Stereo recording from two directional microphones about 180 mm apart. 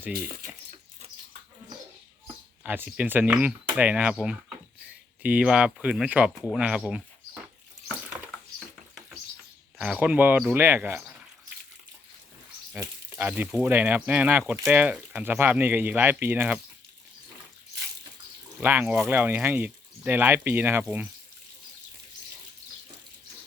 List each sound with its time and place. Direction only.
0.1 s speech: 50° right (ahead or behind)
2.6 s speech: 10° right (ahead or behind)
9.7 s speech: 5° right (ahead or behind)
12.7 s sizzle: 10° right (ahead or behind)
13.5 s speech: 10° right (ahead or behind)
18.6 s speech: 10° right (ahead or behind)